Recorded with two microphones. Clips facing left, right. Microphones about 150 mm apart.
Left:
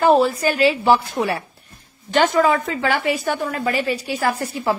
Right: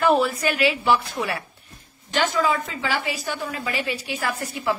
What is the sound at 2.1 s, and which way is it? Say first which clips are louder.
A woman's voice: left 6 dB; 55° left (ahead or behind).